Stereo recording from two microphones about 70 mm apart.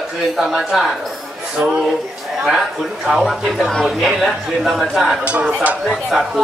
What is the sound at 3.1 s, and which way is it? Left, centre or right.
Speech, centre.